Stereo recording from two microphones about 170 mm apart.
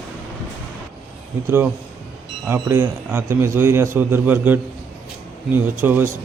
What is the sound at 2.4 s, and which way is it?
A man's voice, 15° right (ahead or behind).